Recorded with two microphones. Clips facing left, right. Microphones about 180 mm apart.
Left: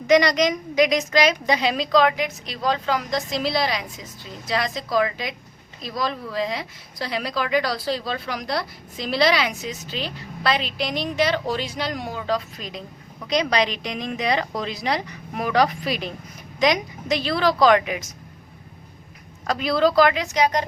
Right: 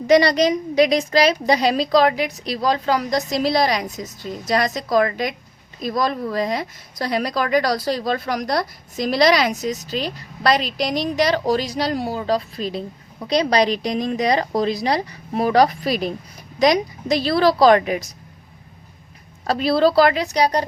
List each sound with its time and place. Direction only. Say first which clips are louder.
0.1 s a woman's voice: right 3 dB; 30° right (ahead or behind)
19.5 s a woman's voice: right 3 dB; 35° right (ahead or behind)